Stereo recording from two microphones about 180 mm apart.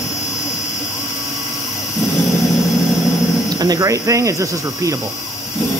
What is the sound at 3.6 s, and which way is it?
Speech, 20° right (ahead or behind).